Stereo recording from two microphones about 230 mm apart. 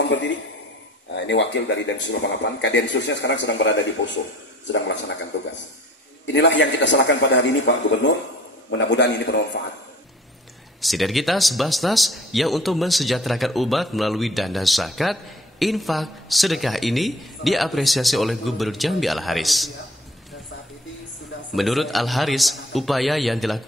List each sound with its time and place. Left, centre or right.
0.0 s a man's voice: left
6.2 s speech: left
10.8 s speech: centre
21.5 s speech: centre